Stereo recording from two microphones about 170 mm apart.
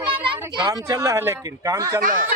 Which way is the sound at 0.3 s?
30° right (ahead or behind).